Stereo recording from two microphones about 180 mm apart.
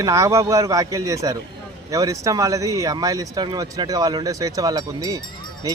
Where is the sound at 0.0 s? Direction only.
20° right (ahead or behind).